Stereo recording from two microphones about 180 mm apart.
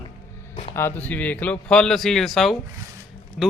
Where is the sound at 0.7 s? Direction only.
15° left (ahead or behind).